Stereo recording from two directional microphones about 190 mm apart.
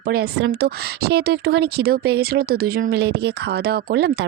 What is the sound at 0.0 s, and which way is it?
A woman's voice, 50° right (ahead or behind).